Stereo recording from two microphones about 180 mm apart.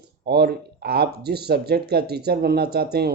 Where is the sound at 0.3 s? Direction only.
65° right (ahead or behind).